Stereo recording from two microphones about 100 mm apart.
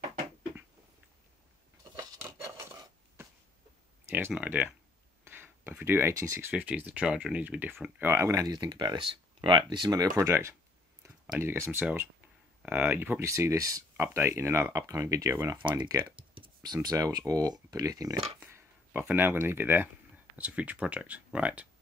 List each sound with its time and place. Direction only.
2.1 s a sound: 30° right (ahead or behind)
4.3 s speech: 10° right (ahead or behind)
5.2 s speech: 20° right (ahead or behind)
6.5 s speech: 15° right (ahead or behind); by 10.2 s 40° right (ahead or behind)
10.2 s speech: 25° right (ahead or behind)
15.3 s speech: 20° right (ahead or behind)
15.9 s speech: 35° right (ahead or behind)
18.5 s speech: 20° right (ahead or behind)